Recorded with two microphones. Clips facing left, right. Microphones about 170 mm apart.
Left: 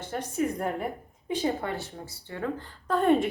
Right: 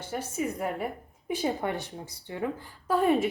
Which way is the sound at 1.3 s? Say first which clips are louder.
Even; 15° right (ahead or behind).